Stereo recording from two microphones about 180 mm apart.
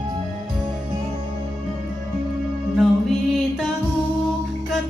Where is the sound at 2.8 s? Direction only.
Centre (ahead or behind).